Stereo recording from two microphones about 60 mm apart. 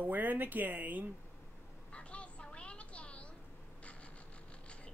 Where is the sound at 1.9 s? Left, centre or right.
Centre.